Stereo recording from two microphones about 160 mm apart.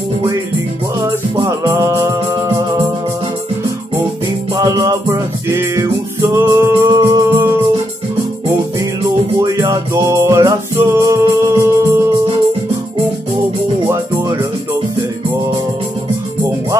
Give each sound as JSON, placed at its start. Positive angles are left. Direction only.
{"t": 0.9, "sound": "music", "side_deg": -25}
{"t": 4.6, "sound": "music", "side_deg": -20}
{"t": 9.4, "sound": "music", "side_deg": -20}